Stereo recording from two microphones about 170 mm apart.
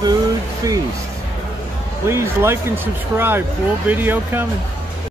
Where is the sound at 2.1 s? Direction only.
15° right (ahead or behind).